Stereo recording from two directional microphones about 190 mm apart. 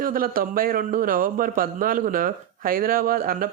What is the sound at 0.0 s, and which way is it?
A man's voice, 50° right (ahead or behind).